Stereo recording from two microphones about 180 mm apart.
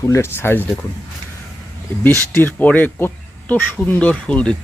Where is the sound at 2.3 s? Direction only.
10° left (ahead or behind).